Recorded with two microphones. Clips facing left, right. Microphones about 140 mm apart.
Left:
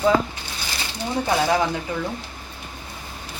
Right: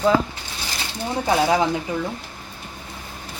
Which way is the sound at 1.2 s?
20° right (ahead or behind).